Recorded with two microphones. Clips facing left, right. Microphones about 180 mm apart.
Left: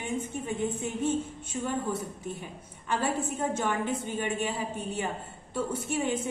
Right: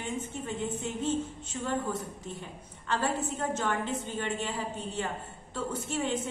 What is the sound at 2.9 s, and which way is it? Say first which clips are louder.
A woman's voice: left 1 dB; 10° left (ahead or behind).